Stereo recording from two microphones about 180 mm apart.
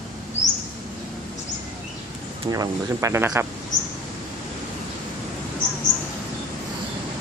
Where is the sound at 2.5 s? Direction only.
20° right (ahead or behind).